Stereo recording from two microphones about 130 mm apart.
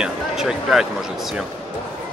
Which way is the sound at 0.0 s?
5° right (ahead or behind).